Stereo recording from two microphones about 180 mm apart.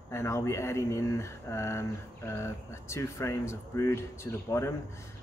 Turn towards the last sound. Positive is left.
turn(degrees=15)  # may be behind; listen again after turning